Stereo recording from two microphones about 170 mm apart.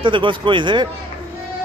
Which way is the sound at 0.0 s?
30° right (ahead or behind).